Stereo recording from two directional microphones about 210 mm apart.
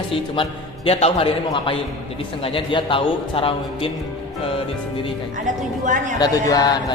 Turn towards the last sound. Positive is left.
turn(degrees=20)  # may be behind; listen again after turning